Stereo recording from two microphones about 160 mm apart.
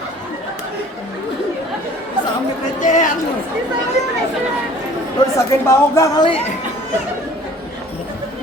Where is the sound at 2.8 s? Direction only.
55° left (ahead or behind).